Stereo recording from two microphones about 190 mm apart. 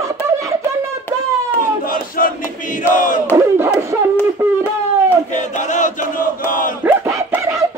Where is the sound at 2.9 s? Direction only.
45° left (ahead or behind).